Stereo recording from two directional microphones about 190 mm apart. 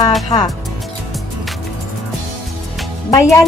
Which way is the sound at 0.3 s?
20° left (ahead or behind).